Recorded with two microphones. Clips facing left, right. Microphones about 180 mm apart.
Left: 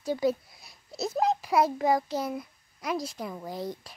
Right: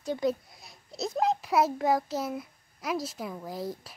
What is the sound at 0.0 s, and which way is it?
A child's voice, centre (ahead or behind).